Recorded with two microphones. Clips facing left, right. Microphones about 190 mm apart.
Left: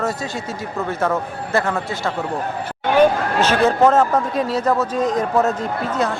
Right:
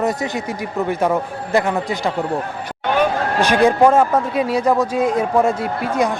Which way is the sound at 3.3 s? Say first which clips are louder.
Right 4 dB; 15° right (ahead or behind).